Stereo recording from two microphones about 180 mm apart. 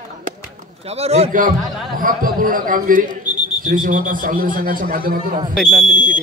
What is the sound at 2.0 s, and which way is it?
A man's voice, 50° right (ahead or behind).